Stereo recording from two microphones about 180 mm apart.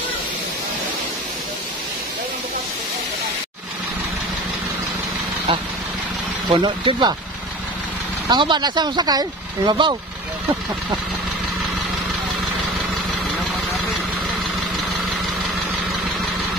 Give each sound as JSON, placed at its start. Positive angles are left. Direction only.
{"t": 6.5, "sound": "speech", "side_deg": -30}
{"t": 8.3, "sound": "speech", "side_deg": -25}